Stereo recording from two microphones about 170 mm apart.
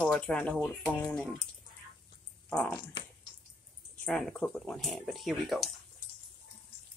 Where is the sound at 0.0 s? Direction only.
5° left (ahead or behind).